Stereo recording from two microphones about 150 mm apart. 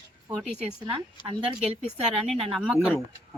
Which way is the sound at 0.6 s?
35° right (ahead or behind).